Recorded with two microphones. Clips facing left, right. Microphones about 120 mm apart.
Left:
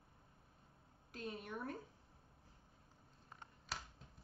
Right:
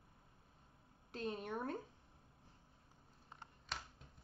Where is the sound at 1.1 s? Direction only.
30° right (ahead or behind).